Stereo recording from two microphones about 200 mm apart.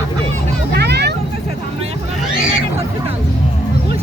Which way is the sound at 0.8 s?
55° right (ahead or behind).